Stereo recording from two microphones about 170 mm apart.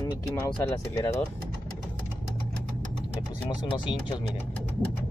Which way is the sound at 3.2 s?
25° left (ahead or behind).